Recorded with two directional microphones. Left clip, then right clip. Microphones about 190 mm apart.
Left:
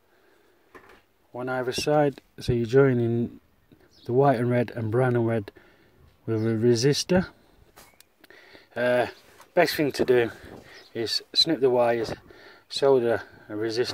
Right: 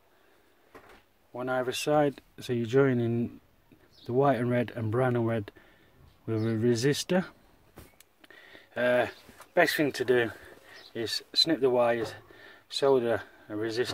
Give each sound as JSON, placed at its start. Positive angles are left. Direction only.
{"t": 1.3, "sound": "speech", "side_deg": 30}